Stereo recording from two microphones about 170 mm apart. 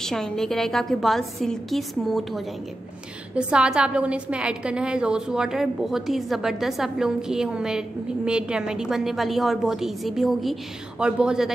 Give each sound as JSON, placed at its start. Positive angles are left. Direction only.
{"t": 0.0, "sound": "a woman's voice", "side_deg": 5}